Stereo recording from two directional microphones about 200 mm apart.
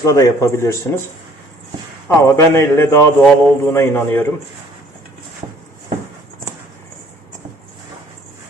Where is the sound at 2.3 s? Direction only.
15° left (ahead or behind).